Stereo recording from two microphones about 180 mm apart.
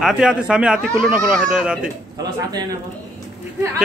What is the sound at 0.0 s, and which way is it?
Speech, 5° right (ahead or behind).